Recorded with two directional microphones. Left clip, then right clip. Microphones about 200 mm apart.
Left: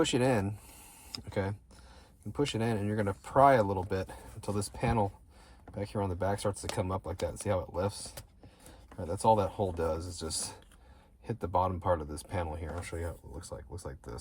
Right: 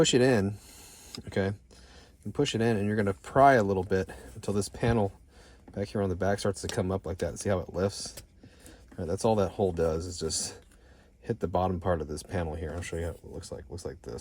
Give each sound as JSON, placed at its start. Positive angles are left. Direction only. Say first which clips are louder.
{"t": 0.0, "sound": "speech", "louder": "right 5 dB", "side_deg": -30}